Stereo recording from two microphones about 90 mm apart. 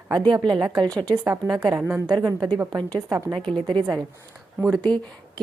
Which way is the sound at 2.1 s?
45° right (ahead or behind).